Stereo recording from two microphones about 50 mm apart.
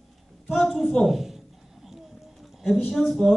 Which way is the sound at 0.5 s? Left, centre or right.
Centre.